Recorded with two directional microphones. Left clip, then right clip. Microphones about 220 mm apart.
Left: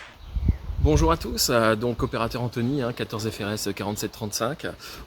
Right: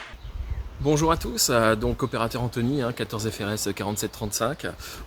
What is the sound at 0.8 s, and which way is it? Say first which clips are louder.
Speech: even; 5° right (ahead or behind).